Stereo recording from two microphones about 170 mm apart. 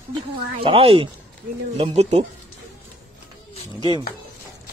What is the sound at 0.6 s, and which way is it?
Speech, 35° right (ahead or behind).